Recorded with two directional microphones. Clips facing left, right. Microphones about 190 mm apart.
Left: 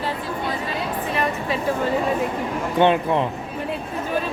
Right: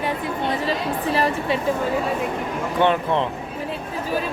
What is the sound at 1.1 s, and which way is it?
Speech, 35° right (ahead or behind).